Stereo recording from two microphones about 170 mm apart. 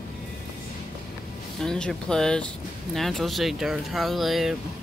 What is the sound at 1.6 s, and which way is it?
Speech, 5° left (ahead or behind).